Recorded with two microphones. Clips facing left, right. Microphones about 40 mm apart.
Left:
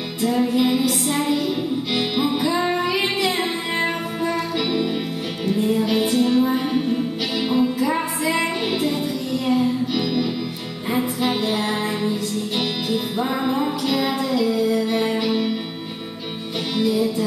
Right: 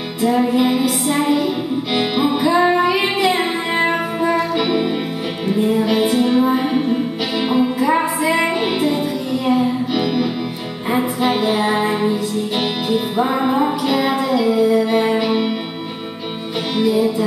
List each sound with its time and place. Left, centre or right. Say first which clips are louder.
0.2 s music: right 4 dB; centre
16.7 s music: right 4 dB; centre